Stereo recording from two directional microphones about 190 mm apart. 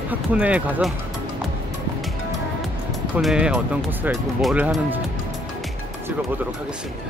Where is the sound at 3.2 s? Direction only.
5° right (ahead or behind).